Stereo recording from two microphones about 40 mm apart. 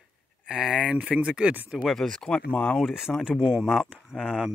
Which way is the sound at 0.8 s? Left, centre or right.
Right.